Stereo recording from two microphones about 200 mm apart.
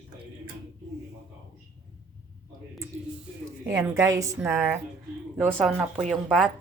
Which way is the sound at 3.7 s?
15° right (ahead or behind).